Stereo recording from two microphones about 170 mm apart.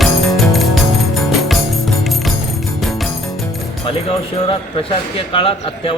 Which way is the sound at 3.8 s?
35° left (ahead or behind).